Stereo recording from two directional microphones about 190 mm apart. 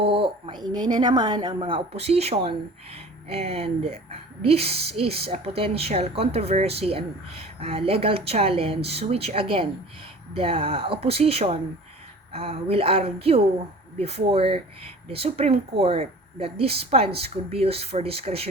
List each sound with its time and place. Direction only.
0.0 s a woman's voice: 30° right (ahead or behind)